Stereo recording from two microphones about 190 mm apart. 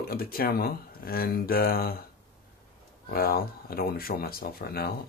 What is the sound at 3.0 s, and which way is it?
Speech, 50° left (ahead or behind).